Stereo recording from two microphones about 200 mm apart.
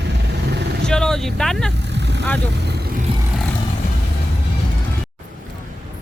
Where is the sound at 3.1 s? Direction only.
25° right (ahead or behind).